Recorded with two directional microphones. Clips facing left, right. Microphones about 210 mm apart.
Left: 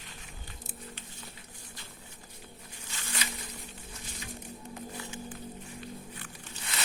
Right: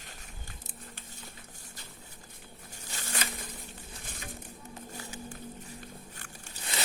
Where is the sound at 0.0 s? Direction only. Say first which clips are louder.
Left 1 dB; 45° right (ahead or behind).